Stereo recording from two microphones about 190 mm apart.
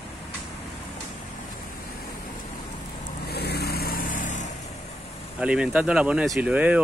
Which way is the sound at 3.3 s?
55° left (ahead or behind).